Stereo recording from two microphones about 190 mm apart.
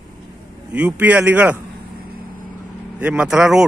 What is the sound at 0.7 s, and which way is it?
Speech, 5° right (ahead or behind).